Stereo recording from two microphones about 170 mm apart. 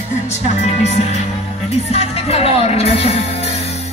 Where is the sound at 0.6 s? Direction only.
40° left (ahead or behind).